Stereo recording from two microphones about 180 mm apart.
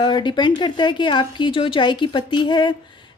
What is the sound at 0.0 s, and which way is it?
A woman's voice, 25° left (ahead or behind).